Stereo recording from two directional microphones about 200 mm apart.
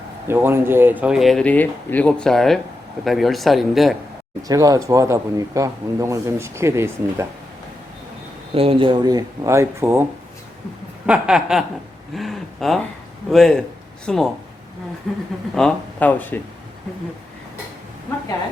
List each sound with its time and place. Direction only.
0.3 s speech: 10° right (ahead or behind)
4.4 s speech: 15° right (ahead or behind)
8.5 s speech: 25° right (ahead or behind); by 11.6 s 5° right (ahead or behind)
12.1 s a sound: centre (ahead or behind)
13.3 s a man's voice: 5° left (ahead or behind)